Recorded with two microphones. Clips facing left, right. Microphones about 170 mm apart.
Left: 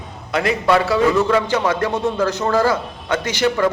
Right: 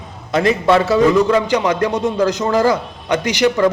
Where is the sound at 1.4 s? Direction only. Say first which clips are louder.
Right 3 dB; 15° right (ahead or behind).